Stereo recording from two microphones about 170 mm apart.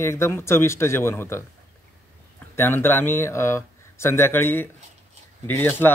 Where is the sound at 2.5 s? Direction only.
15° left (ahead or behind).